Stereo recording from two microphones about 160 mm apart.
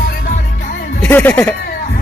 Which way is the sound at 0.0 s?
70° left (ahead or behind).